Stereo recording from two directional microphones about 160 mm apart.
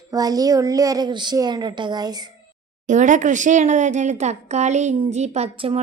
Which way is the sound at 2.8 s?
50° right (ahead or behind).